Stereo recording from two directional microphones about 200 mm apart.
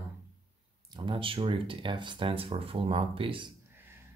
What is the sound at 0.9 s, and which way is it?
Speech, 25° right (ahead or behind).